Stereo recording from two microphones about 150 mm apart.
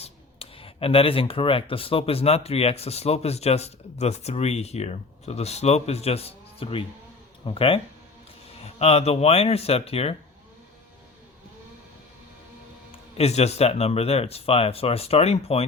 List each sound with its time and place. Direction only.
0.0 s speech: 40° left (ahead or behind)
13.1 s speech: 45° left (ahead or behind)